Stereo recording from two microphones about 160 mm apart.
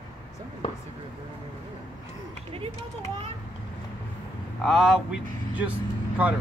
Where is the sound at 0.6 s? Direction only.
35° left (ahead or behind).